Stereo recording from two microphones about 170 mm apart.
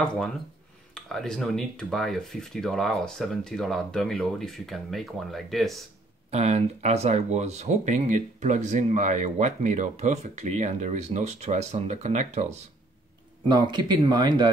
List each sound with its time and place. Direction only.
0.0 s speech: 5° left (ahead or behind)
6.3 s speech: 40° right (ahead or behind)
13.5 s speech: 25° right (ahead or behind)